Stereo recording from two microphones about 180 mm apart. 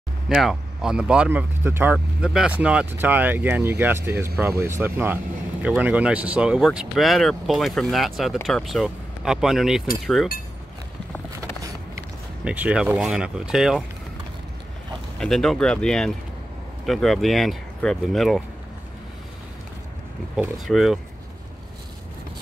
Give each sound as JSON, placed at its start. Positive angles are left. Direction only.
{"t": 0.3, "sound": "speech", "side_deg": 0}
{"t": 12.4, "sound": "speech", "side_deg": -5}
{"t": 15.1, "sound": "speech", "side_deg": 0}
{"t": 20.3, "sound": "speech", "side_deg": 0}